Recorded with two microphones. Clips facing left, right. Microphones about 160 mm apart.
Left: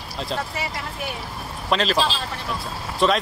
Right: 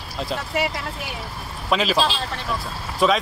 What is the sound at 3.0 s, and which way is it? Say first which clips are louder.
Speech: right 1 dB; 5° right (ahead or behind).